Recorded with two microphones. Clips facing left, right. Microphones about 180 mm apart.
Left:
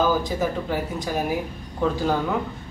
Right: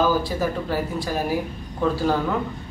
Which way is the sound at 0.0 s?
15° left (ahead or behind).